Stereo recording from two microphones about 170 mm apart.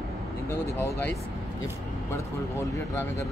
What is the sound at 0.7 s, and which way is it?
Speech, 10° left (ahead or behind).